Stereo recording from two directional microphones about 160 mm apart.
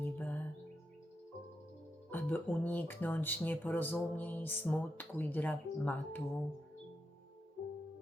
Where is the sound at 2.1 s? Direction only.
10° left (ahead or behind).